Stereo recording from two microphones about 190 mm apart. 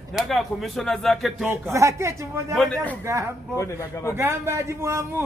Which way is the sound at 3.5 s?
15° left (ahead or behind).